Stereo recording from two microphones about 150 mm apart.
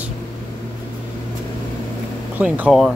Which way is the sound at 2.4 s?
5° right (ahead or behind).